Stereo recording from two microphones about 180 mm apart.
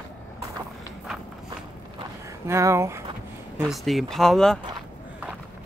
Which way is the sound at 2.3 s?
15° right (ahead or behind).